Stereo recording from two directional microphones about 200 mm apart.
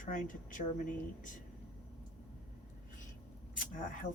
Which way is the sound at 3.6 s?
40° left (ahead or behind).